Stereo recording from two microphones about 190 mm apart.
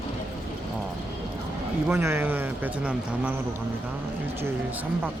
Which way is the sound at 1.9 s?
15° right (ahead or behind).